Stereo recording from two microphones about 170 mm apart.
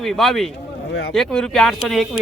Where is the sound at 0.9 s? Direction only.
90° left.